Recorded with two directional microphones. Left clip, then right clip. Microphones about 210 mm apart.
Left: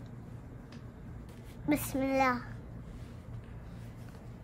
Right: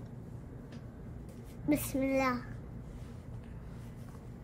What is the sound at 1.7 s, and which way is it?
Speech, 15° left (ahead or behind).